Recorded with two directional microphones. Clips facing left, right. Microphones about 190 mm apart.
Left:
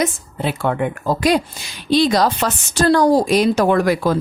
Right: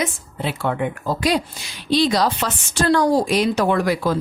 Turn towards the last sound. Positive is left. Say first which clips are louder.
# left 3 dB
turn(degrees=50)  # may be behind; listen again after turning